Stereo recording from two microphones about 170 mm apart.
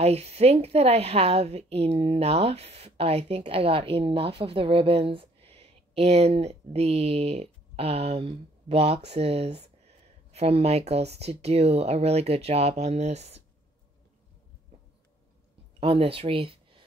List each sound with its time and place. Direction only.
0.0 s a woman's voice: 40° right (ahead or behind)
15.8 s speech: 35° right (ahead or behind)